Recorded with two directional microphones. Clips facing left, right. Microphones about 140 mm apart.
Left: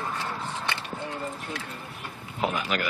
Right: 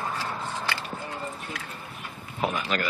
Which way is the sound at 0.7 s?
20° left (ahead or behind).